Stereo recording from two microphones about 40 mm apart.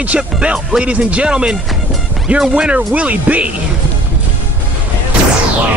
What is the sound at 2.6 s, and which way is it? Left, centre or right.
Speech, right.